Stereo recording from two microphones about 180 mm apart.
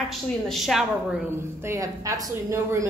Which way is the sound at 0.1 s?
Centre (ahead or behind).